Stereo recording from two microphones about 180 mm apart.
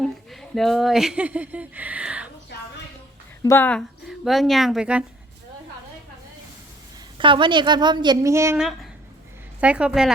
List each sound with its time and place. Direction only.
0.0 s speech: centre (ahead or behind)
3.4 s a woman's voice: 10° left (ahead or behind); by 5.0 s 5° right (ahead or behind)
7.2 s a woman's voice: 25° right (ahead or behind)
8.5 s a woman's voice: centre (ahead or behind)